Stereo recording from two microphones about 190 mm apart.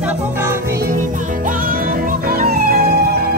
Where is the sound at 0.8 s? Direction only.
45° right (ahead or behind).